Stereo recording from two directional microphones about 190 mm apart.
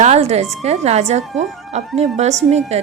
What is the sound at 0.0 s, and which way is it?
Speech, 35° right (ahead or behind).